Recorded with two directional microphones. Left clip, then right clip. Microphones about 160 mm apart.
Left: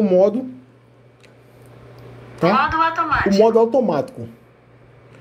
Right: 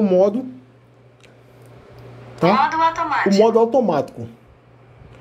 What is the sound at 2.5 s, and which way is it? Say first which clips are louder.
Speech: right 1 dB; 15° right (ahead or behind).